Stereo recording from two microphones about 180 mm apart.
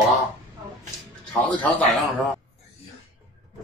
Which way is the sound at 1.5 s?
10° left (ahead or behind).